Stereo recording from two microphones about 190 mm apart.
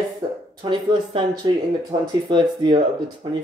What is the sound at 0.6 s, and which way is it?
Speech, 25° right (ahead or behind).